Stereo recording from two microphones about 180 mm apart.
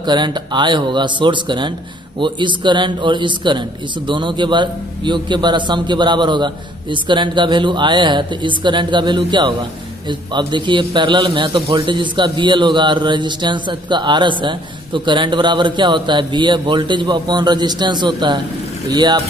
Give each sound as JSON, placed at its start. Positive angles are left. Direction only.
{"t": 0.0, "sound": "a man's voice", "side_deg": -25}